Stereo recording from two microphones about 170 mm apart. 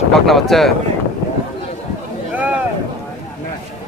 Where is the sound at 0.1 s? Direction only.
Centre (ahead or behind).